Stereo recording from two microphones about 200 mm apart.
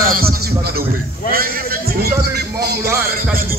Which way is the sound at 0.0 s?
45° right (ahead or behind).